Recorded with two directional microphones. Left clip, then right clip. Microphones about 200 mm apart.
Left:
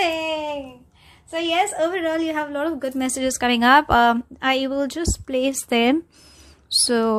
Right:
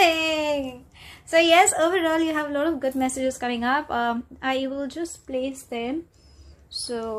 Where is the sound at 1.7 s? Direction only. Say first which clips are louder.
Right 1 dB; centre (ahead or behind).